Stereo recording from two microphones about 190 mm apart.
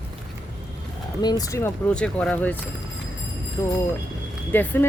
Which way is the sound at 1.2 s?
15° left (ahead or behind).